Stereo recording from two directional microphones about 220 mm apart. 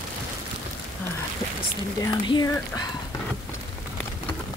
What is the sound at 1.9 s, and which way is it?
Speech, 20° left (ahead or behind).